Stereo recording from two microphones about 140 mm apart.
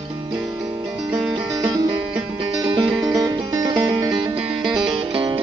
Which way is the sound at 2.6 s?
30° right (ahead or behind).